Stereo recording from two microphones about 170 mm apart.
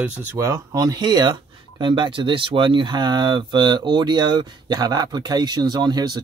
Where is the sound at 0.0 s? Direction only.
10° right (ahead or behind).